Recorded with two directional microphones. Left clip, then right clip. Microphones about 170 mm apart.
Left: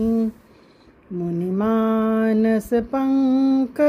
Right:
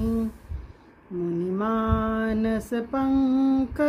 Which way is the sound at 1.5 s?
35° left (ahead or behind).